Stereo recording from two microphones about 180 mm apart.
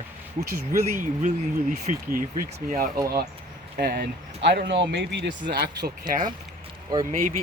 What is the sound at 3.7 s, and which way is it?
Speech, 65° right (ahead or behind).